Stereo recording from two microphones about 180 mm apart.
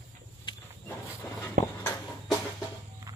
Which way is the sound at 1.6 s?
50° right (ahead or behind).